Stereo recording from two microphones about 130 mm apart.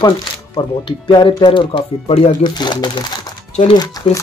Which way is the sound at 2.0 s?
50° left (ahead or behind).